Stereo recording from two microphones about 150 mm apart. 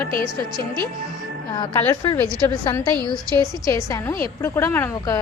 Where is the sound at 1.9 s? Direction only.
25° left (ahead or behind).